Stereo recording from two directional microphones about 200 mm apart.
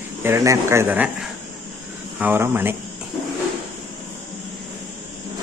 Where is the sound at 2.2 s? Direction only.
10° right (ahead or behind).